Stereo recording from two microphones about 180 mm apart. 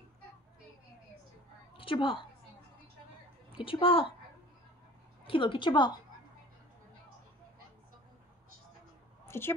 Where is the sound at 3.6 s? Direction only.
30° left (ahead or behind).